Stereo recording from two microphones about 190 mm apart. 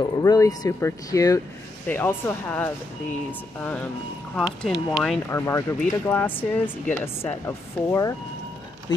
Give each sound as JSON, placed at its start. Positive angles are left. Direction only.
{"t": 0.0, "sound": "speech", "side_deg": 20}
{"t": 5.3, "sound": "speech", "side_deg": 15}